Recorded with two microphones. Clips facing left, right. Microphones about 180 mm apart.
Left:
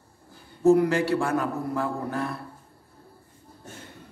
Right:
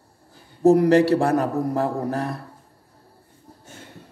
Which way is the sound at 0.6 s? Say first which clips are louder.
Right 5 dB; 35° right (ahead or behind).